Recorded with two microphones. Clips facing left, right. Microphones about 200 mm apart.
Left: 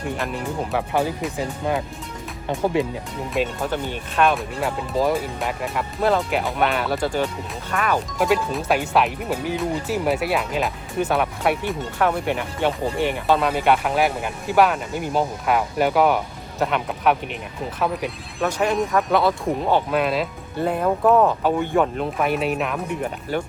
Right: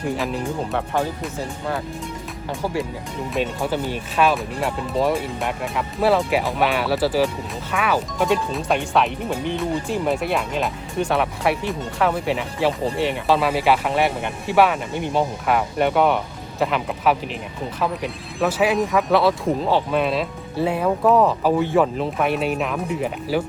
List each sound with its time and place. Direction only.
0.9 s speech: 10° left (ahead or behind)
3.6 s speech: 5° right (ahead or behind)